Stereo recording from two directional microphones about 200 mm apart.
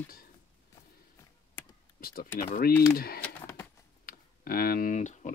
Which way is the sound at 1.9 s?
45° left (ahead or behind).